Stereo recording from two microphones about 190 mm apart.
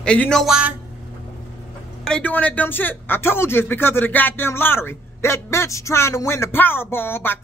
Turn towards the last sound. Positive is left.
turn(degrees=10)  # may be behind; listen again after turning